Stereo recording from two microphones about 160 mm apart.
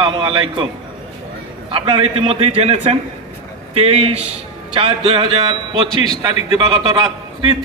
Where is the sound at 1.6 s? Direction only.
35° right (ahead or behind).